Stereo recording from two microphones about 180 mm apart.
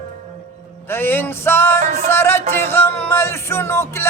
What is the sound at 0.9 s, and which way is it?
Music, 10° left (ahead or behind).